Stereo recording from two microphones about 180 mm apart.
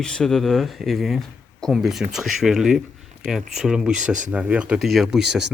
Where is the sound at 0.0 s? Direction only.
5° left (ahead or behind).